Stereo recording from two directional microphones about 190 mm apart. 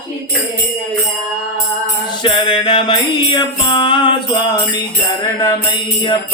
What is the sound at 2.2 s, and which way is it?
Music, 25° left (ahead or behind).